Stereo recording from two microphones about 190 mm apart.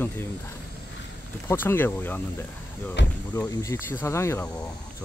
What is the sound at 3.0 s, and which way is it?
Speech, 70° left (ahead or behind).